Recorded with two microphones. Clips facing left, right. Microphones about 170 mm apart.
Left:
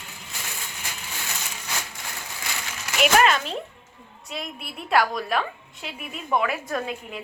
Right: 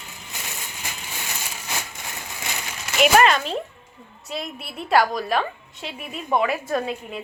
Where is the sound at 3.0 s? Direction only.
Centre (ahead or behind).